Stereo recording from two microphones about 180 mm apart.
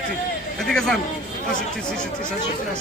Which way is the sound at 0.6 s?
5° left (ahead or behind).